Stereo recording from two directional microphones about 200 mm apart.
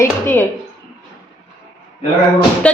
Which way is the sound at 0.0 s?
10° left (ahead or behind).